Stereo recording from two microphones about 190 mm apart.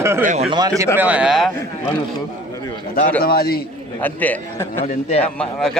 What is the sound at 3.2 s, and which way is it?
Speech, 55° left (ahead or behind).